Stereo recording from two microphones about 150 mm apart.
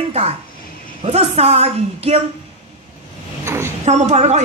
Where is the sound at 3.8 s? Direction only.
50° right (ahead or behind).